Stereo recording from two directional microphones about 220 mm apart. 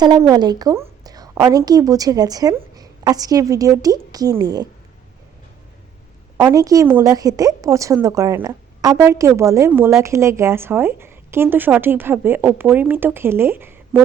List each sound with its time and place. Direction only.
0.0 s a woman's voice: 15° right (ahead or behind)
6.3 s a woman's voice: 10° right (ahead or behind)